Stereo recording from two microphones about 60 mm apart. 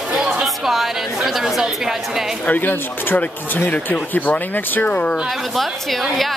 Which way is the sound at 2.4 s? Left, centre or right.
Left.